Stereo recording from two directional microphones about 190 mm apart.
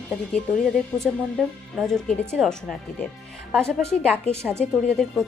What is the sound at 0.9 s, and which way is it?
Speech, 5° left (ahead or behind).